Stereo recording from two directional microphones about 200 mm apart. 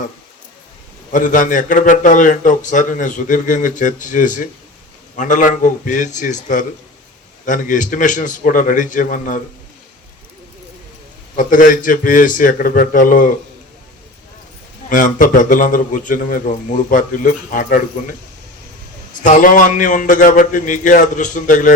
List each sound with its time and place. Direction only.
1.1 s a man's voice: 40° left (ahead or behind)
11.3 s a man's voice: 40° left (ahead or behind)
14.8 s a man's voice: 40° left (ahead or behind)
19.2 s a man's voice: 40° left (ahead or behind)